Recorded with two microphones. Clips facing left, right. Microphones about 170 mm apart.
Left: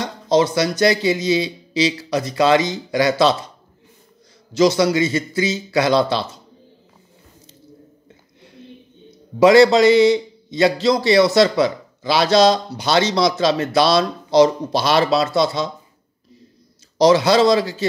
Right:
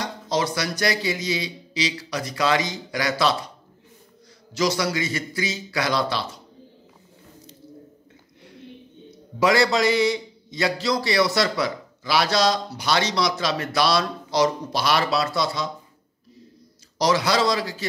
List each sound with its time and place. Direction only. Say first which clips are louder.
0.0 s a man's voice: left 8 dB; 25° left (ahead or behind)
4.6 s a man's voice: left 8 dB; 25° left (ahead or behind)
9.4 s a man's voice: left 9 dB; 25° left (ahead or behind)
17.0 s a man's voice: left 8 dB; 25° left (ahead or behind)